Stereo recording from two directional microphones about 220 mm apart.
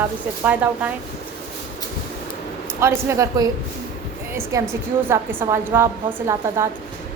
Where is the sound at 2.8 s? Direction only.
15° right (ahead or behind).